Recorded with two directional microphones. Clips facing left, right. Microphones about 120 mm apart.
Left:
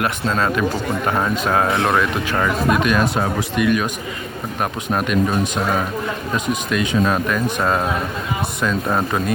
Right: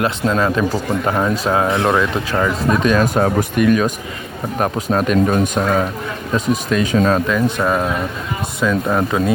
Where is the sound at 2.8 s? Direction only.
35° right (ahead or behind).